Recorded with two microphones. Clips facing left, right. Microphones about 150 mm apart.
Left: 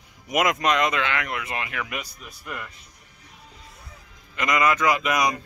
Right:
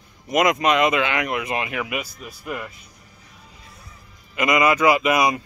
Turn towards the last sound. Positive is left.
turn(degrees=-10)  # may be behind; listen again after turning